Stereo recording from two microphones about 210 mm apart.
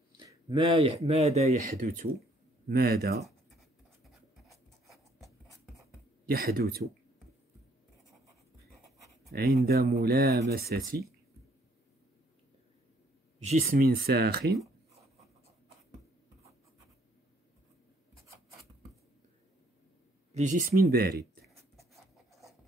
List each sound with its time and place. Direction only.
0.2 s speech: 20° right (ahead or behind); by 3.2 s 50° right (ahead or behind)
4.5 s a sound: centre (ahead or behind)
6.2 s speech: 45° right (ahead or behind)
9.3 s speech: 45° right (ahead or behind)
13.4 s speech: 30° right (ahead or behind); by 14.6 s 50° right (ahead or behind)
20.3 s speech: 35° right (ahead or behind)